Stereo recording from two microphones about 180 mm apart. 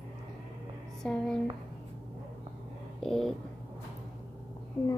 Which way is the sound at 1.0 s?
5° left (ahead or behind).